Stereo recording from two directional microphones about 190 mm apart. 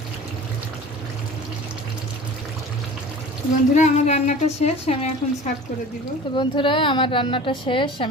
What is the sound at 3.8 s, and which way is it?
A woman's voice, 40° left (ahead or behind).